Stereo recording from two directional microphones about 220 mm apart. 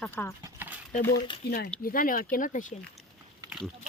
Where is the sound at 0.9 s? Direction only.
40° left (ahead or behind).